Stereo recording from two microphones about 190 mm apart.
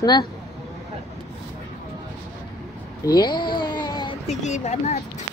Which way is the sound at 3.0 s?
20° left (ahead or behind).